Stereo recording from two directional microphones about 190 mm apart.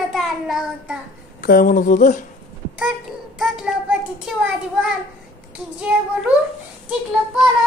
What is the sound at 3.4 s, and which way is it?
Child singing, 5° right (ahead or behind).